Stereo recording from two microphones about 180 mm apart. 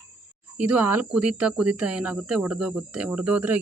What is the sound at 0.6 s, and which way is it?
Speech, 10° right (ahead or behind).